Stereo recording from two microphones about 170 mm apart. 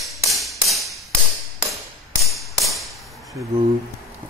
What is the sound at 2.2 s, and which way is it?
Hammer, centre (ahead or behind).